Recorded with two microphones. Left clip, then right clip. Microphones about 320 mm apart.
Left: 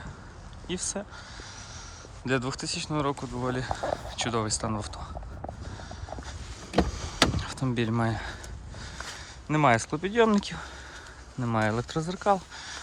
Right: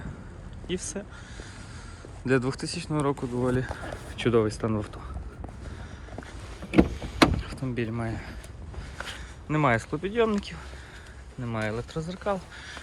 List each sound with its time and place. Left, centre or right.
0.7 s speech: centre
2.2 s speech: centre
6.9 s vehicle: left
9.5 s speech: left